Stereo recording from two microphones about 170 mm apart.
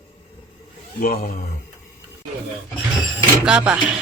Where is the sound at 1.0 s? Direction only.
55° left (ahead or behind).